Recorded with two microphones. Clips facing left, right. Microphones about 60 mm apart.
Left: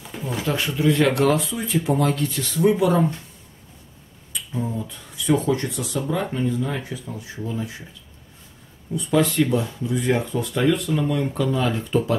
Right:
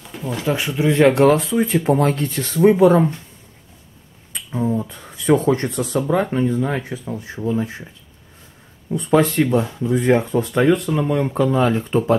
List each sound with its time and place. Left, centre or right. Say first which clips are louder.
0.0 s a sound: right 2 dB; centre
0.5 s speech: right 2 dB; centre
4.3 s speech: right 6 dB; right
8.9 s speech: right 4 dB; right